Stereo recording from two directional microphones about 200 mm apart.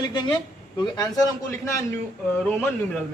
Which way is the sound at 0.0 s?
20° left (ahead or behind).